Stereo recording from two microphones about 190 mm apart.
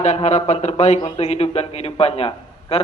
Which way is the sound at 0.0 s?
35° left (ahead or behind).